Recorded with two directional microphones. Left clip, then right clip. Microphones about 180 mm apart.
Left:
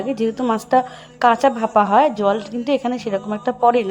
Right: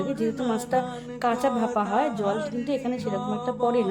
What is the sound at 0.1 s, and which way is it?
A woman's voice, 30° left (ahead or behind).